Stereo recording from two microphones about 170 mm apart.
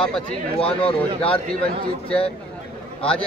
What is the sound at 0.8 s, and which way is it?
Speech, 35° left (ahead or behind).